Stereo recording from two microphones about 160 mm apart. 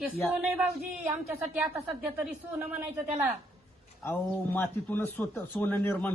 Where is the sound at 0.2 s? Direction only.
Centre (ahead or behind).